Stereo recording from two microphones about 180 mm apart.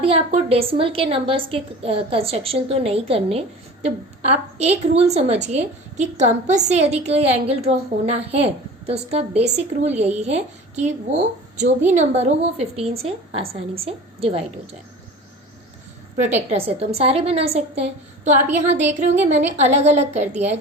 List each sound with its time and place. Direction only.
0.0 s a woman's voice: 30° right (ahead or behind)
4.5 s a woman's voice: 35° right (ahead or behind)
16.2 s a woman's voice: 35° right (ahead or behind)